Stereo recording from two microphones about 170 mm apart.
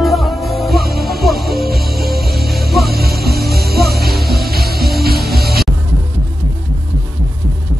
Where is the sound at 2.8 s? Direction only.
65° right (ahead or behind).